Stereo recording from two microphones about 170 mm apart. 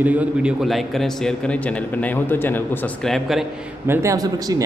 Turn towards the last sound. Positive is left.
turn(degrees=-20)  # may be behind; listen again after turning